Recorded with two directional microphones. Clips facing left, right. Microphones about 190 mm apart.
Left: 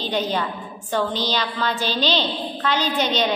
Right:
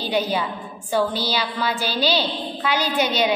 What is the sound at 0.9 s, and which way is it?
A woman's voice, 10° right (ahead or behind).